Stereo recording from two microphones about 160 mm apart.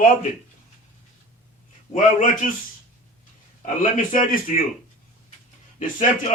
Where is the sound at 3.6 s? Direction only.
50° left (ahead or behind).